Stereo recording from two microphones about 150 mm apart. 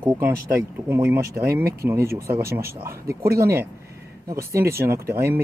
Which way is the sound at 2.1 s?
80° right.